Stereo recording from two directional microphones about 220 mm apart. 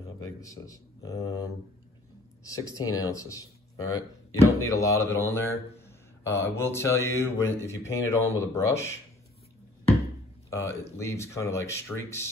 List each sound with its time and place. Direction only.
0.2 s speech: 15° left (ahead or behind)
10.5 s speech: 10° left (ahead or behind)